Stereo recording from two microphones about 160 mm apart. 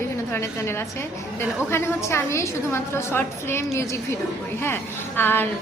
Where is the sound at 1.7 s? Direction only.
15° left (ahead or behind).